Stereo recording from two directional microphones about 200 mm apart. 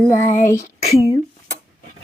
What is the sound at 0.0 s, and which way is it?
Speech, 10° left (ahead or behind).